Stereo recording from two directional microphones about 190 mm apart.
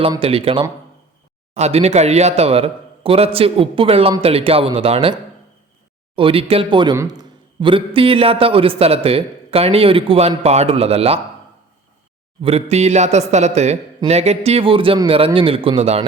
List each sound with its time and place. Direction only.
0.1 s a man's voice: 30° right (ahead or behind)
6.1 s a man's voice: 30° right (ahead or behind)
12.4 s a man's voice: 30° right (ahead or behind)